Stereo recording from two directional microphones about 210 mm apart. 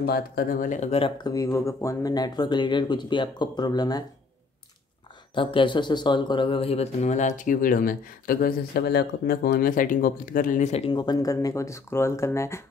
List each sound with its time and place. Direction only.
0.0 s speech: 45° left (ahead or behind); by 4.0 s 20° left (ahead or behind)
5.3 s speech: 25° left (ahead or behind)
10.9 s speech: 20° left (ahead or behind)